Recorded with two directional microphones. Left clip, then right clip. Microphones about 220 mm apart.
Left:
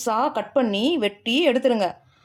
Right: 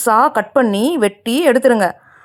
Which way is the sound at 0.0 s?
35° right (ahead or behind).